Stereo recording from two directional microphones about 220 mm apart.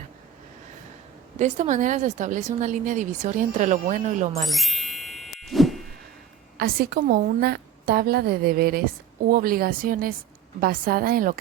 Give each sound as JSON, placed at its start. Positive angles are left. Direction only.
{"t": 1.4, "sound": "a woman's voice", "side_deg": -35}
{"t": 4.4, "sound": "jingle", "side_deg": 0}
{"t": 6.6, "sound": "a woman's voice", "side_deg": -45}